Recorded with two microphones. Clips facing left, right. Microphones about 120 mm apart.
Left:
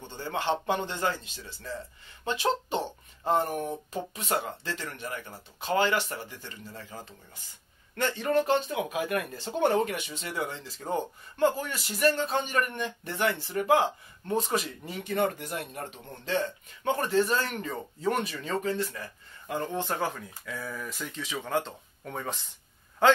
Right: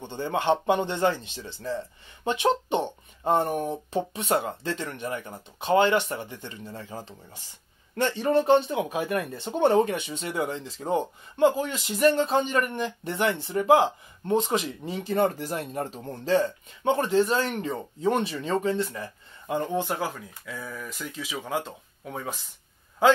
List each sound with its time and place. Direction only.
0.0 s speech: 20° right (ahead or behind)